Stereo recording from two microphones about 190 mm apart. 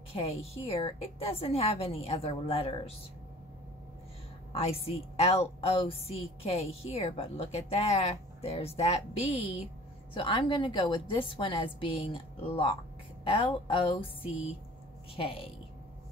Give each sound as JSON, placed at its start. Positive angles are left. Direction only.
{"t": 0.1, "sound": "a woman's voice", "side_deg": 30}
{"t": 4.5, "sound": "a woman's voice", "side_deg": 30}
{"t": 15.1, "sound": "a woman's voice", "side_deg": 30}